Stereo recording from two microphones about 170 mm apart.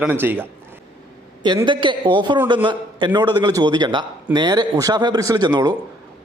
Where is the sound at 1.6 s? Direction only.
30° right (ahead or behind).